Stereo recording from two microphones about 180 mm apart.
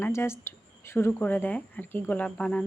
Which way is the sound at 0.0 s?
15° left (ahead or behind).